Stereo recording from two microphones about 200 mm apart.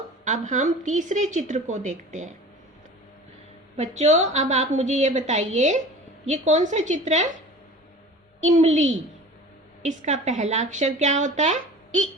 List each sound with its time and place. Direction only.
0.3 s a woman's voice: 35° right (ahead or behind)
3.8 s a woman's voice: 35° right (ahead or behind)